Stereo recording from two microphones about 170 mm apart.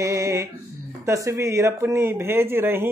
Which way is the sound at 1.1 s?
15° right (ahead or behind).